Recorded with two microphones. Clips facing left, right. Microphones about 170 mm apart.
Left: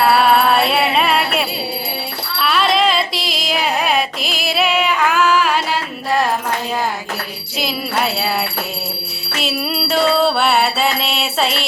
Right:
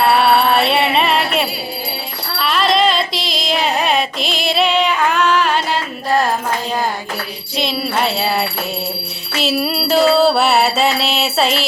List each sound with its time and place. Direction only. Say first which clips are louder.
0.2 s music: even; 5° left (ahead or behind)
2.4 s carnatic music: right 1 dB; centre (ahead or behind)
7.6 s mantra: right 2 dB; centre (ahead or behind)